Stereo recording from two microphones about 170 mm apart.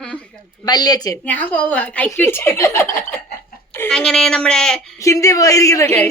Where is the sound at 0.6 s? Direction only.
25° left (ahead or behind).